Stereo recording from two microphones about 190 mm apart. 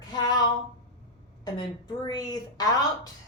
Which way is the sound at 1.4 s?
20° left (ahead or behind).